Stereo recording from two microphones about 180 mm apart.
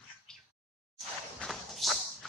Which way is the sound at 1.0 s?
Centre (ahead or behind).